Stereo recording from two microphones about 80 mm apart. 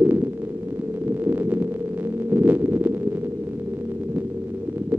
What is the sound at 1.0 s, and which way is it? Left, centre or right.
Heart murmur, right.